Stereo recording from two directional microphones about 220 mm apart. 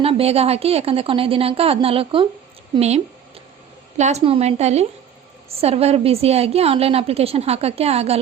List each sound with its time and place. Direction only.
0.0 s a woman's voice: 25° right (ahead or behind)